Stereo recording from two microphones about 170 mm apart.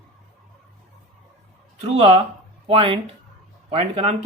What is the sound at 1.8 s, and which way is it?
Speech, 35° right (ahead or behind).